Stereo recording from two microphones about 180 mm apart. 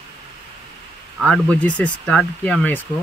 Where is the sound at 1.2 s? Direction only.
5° left (ahead or behind).